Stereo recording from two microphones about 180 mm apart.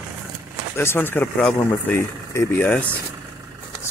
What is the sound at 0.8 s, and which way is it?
Speech, 10° left (ahead or behind).